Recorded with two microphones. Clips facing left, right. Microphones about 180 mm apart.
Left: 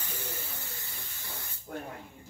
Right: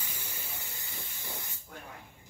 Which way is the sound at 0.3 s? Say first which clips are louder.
Left 4 dB; 10° right (ahead or behind).